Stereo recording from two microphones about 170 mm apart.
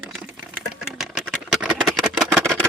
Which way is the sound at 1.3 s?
Centre (ahead or behind).